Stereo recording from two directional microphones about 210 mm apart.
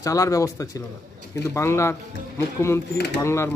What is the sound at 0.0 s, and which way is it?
Speech, 15° left (ahead or behind).